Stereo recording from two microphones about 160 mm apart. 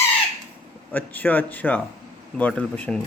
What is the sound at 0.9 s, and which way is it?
Speech, 10° left (ahead or behind).